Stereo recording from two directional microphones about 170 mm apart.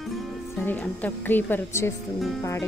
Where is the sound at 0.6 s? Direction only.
10° left (ahead or behind).